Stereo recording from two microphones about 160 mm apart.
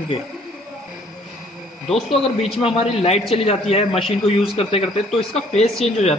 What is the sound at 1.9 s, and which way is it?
A man's voice, 40° left (ahead or behind).